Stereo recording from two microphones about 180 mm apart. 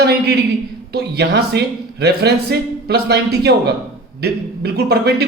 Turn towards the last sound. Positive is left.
turn(degrees=-65)  # may be behind; listen again after turning